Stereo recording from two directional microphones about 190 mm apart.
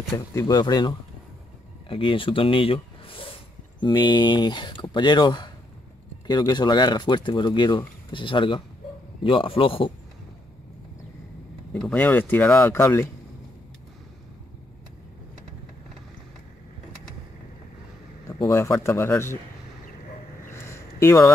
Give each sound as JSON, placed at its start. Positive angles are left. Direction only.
{"t": 0.3, "sound": "speech", "side_deg": 20}
{"t": 11.7, "sound": "speech", "side_deg": 10}
{"t": 18.4, "sound": "speech", "side_deg": 20}
{"t": 20.5, "sound": "a sound", "side_deg": 15}